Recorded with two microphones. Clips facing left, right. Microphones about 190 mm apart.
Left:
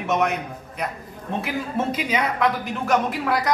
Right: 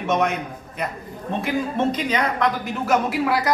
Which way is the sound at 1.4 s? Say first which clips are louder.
Right 4 dB; 5° left (ahead or behind).